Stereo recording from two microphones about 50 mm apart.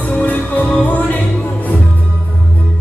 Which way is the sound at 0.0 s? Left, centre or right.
Left.